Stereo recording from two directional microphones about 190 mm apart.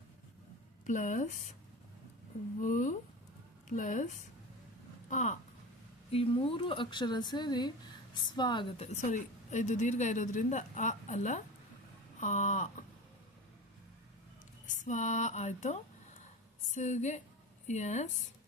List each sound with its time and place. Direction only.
0.9 s a woman's voice: 40° left (ahead or behind)
2.6 s a woman's voice: 40° left (ahead or behind)
5.0 s a sound: 40° left (ahead or behind)
6.1 s speech: 30° left (ahead or behind)
8.9 s a woman's voice: 40° left (ahead or behind)
14.7 s a woman's voice: 40° left (ahead or behind)